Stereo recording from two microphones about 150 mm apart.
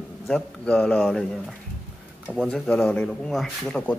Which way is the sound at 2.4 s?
5° left (ahead or behind).